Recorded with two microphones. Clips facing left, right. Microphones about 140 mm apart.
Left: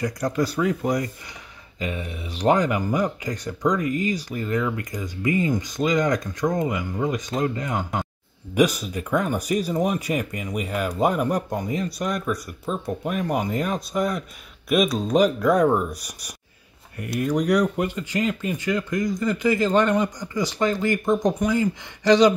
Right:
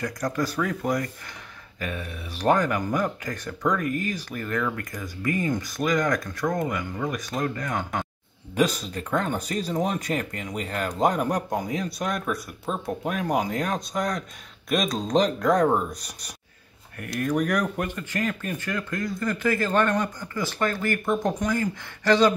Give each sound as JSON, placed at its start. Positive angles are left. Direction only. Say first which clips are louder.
{"t": 0.0, "sound": "speech", "louder": "left 3 dB", "side_deg": 15}